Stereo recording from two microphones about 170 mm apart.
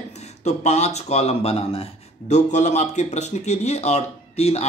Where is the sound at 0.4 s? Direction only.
40° left (ahead or behind).